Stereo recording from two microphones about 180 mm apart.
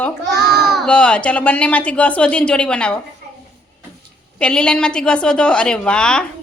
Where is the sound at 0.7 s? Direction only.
5° left (ahead or behind).